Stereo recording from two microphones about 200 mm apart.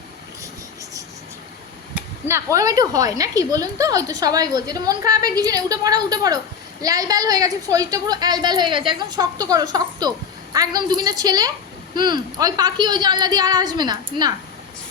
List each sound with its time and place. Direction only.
2.0 s a woman's voice: 10° right (ahead or behind)